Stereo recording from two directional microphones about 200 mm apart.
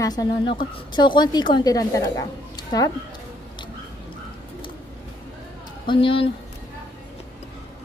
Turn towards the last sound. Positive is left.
turn(degrees=25)  # may be behind; listen again after turning